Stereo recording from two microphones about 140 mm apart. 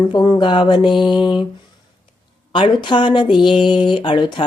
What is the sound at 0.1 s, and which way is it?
Speech, 30° left (ahead or behind).